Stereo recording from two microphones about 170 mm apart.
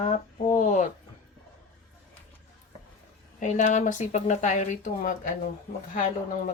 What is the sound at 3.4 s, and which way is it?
Speech, 45° left (ahead or behind).